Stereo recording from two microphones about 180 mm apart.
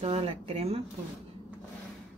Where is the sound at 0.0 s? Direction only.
35° right (ahead or behind).